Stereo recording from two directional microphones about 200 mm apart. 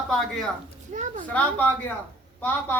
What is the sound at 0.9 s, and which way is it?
Speech, 35° right (ahead or behind).